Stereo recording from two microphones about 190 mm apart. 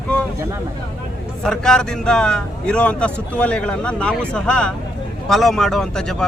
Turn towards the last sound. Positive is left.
turn(degrees=5)  # may be behind; listen again after turning